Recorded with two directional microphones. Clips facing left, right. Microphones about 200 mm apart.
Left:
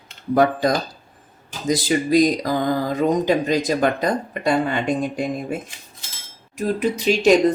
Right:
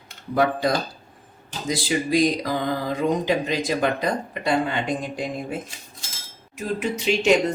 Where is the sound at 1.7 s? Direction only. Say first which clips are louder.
Left 5 dB; 45° left (ahead or behind).